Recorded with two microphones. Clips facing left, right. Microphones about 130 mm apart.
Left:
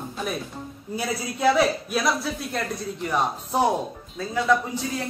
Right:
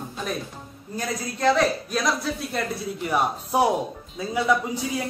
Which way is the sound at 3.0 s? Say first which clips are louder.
Right 1 dB; 10° right (ahead or behind).